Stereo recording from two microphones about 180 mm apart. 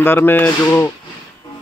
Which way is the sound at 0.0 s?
10° left (ahead or behind).